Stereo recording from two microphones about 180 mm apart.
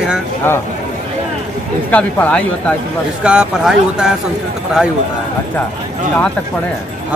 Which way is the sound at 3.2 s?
5° right (ahead or behind).